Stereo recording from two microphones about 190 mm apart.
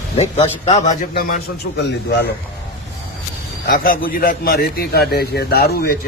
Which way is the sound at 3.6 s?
50° left (ahead or behind).